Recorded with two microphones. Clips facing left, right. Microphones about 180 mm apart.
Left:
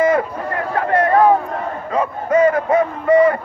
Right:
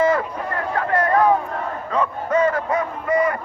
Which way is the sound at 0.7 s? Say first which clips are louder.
Left 4 dB; 25° left (ahead or behind).